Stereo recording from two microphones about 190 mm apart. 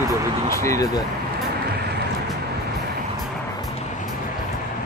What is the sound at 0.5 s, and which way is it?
Speech, 15° left (ahead or behind).